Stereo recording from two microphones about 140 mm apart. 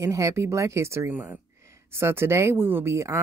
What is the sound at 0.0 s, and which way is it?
Speech, 20° right (ahead or behind).